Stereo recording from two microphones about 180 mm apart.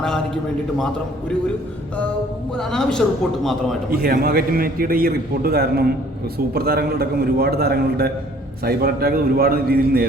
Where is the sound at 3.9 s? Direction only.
55° right (ahead or behind).